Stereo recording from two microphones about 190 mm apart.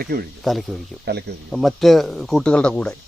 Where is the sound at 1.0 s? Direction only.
60° right (ahead or behind).